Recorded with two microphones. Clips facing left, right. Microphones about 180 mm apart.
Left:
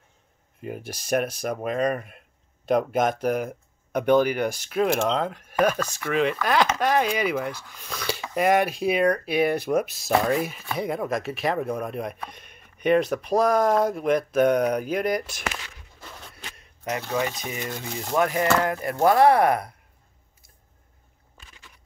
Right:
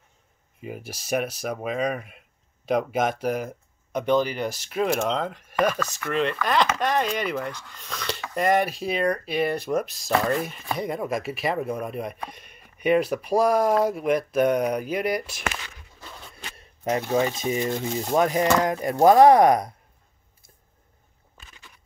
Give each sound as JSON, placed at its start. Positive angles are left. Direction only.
{"t": 0.6, "sound": "speech", "side_deg": -5}
{"t": 4.2, "sound": "speech", "side_deg": 55}
{"t": 4.6, "sound": "speech", "side_deg": 0}
{"t": 16.5, "sound": "speech", "side_deg": -30}